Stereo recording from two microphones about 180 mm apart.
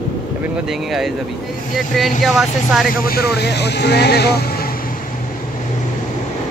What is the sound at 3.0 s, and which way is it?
Speech, 60° left (ahead or behind).